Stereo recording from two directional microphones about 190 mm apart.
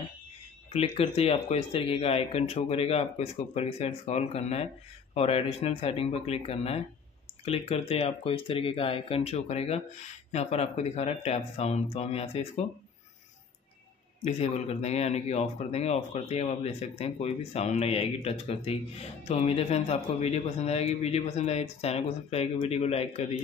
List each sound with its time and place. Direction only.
0.7 s speech: 30° left (ahead or behind)
14.2 s speech: 35° left (ahead or behind)